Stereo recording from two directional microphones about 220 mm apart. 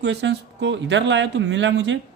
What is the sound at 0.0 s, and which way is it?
Speech, 50° right (ahead or behind).